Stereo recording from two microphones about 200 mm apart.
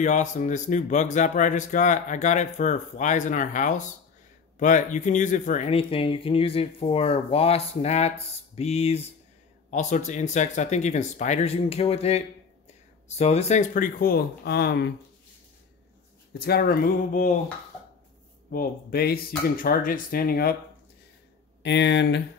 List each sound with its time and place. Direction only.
0.0 s speech: 40° left (ahead or behind)
16.3 s speech: 50° left (ahead or behind)
18.5 s speech: 50° left (ahead or behind)
21.6 s speech: 60° left (ahead or behind)